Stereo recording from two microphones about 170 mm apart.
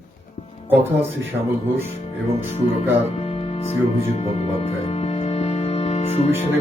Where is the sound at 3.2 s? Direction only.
35° left (ahead or behind).